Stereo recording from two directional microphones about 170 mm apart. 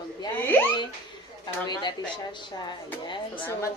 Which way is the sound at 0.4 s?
10° left (ahead or behind).